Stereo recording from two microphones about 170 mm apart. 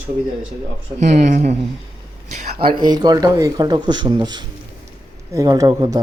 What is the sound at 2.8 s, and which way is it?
Speech, 25° right (ahead or behind).